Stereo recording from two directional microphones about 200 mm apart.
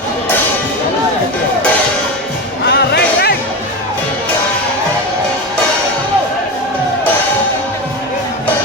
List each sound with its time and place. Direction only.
2.6 s music: 55° left (ahead or behind)